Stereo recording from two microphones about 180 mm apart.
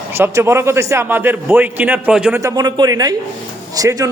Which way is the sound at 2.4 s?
20° right (ahead or behind).